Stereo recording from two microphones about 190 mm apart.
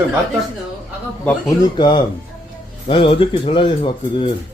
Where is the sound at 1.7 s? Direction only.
25° left (ahead or behind).